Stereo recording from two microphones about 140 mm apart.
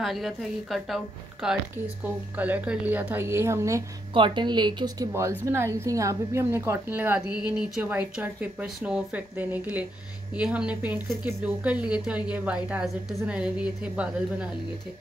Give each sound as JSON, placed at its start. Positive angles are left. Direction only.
{"t": 0.0, "sound": "a woman's voice", "side_deg": 0}
{"t": 2.0, "sound": "a woman's voice", "side_deg": -10}
{"t": 4.1, "sound": "a woman's voice", "side_deg": -35}